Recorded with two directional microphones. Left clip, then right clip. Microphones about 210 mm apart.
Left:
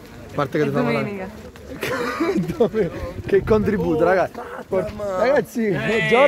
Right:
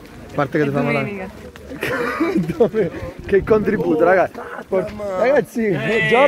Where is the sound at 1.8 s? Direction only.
15° right (ahead or behind).